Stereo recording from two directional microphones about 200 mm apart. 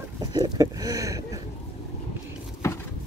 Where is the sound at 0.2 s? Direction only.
20° right (ahead or behind).